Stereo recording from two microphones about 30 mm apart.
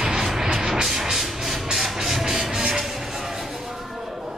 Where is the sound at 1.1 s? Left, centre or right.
Centre.